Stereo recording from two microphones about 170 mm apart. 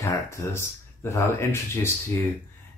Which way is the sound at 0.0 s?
15° left (ahead or behind).